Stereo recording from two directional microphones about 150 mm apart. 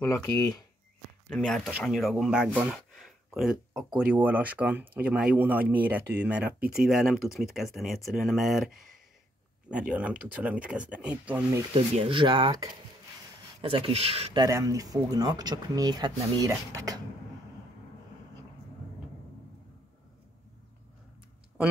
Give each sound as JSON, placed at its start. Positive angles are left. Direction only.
{"t": 0.0, "sound": "speech", "side_deg": 20}
{"t": 1.3, "sound": "speech", "side_deg": 0}
{"t": 11.7, "sound": "speech", "side_deg": -35}
{"t": 14.4, "sound": "speech", "side_deg": -25}